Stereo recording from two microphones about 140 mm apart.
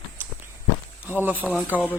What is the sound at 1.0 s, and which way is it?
Speech, 15° right (ahead or behind).